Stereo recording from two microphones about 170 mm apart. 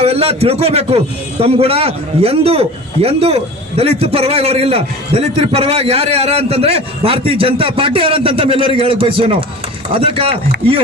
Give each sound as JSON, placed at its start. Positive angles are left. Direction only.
{"t": 0.0, "sound": "a man's voice", "side_deg": -35}